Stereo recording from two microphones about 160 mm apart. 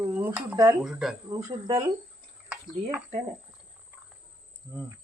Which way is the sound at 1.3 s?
25° right (ahead or behind).